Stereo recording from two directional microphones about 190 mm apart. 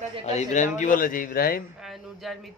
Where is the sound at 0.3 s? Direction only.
40° left (ahead or behind).